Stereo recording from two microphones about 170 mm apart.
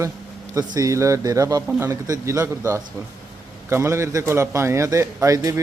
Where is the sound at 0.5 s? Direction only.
20° right (ahead or behind).